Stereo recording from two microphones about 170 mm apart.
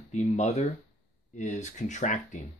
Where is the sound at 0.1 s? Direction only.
45° left (ahead or behind).